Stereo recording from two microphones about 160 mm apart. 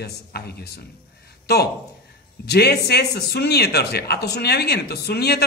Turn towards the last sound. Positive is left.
turn(degrees=90)